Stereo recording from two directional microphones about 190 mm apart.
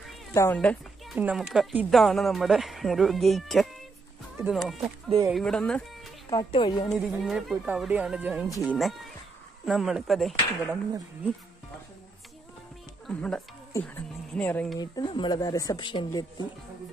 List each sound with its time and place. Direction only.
0.3 s speech: 15° left (ahead or behind)
1.1 s speech: 5° right (ahead or behind)
6.3 s speech: 25° left (ahead or behind)
6.9 s speech: centre (ahead or behind)
13.0 s speech: 5° left (ahead or behind)
14.8 s speech: 25° left (ahead or behind)